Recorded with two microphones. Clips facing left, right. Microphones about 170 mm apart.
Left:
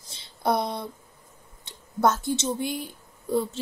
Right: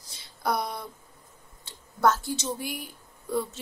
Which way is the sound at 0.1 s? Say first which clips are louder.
Left 4 dB; 25° left (ahead or behind).